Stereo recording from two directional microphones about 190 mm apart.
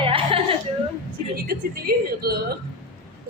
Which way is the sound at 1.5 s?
55° right (ahead or behind).